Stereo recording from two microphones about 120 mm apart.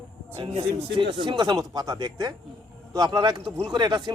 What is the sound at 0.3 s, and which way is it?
Speech, 55° right (ahead or behind).